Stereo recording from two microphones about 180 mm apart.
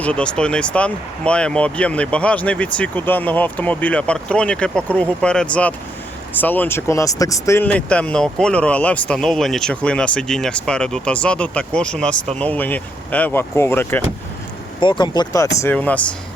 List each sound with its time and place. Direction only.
0.0 s speech: 5° left (ahead or behind)
14.8 s speech: 25° left (ahead or behind); by 16.1 s 5° left (ahead or behind)